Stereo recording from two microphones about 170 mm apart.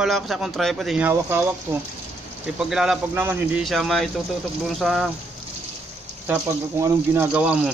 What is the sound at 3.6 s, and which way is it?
Speech, centre (ahead or behind).